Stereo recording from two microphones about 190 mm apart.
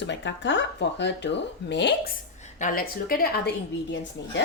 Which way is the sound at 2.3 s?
40° left (ahead or behind).